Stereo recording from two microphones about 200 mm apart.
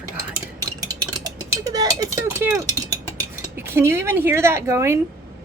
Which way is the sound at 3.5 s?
10° right (ahead or behind).